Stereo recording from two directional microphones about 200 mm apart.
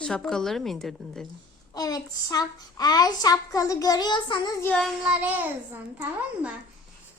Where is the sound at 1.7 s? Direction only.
20° left (ahead or behind).